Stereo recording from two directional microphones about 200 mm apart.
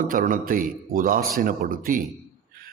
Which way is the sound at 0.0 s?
45° right (ahead or behind).